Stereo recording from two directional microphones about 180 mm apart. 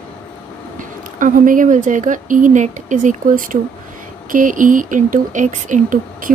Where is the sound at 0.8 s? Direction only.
45° right (ahead or behind).